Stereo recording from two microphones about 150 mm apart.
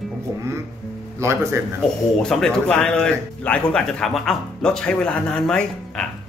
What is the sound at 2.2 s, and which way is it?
A man's voice, 5° left (ahead or behind).